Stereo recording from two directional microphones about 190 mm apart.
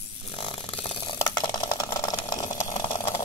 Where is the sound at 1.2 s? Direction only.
15° left (ahead or behind).